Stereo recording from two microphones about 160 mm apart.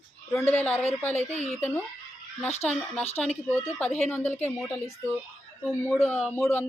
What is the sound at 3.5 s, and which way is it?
Speech, 10° left (ahead or behind).